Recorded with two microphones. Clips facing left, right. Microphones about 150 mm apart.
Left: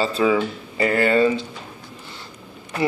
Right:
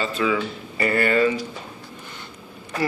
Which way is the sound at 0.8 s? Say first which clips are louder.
Left 2 dB; 20° left (ahead or behind).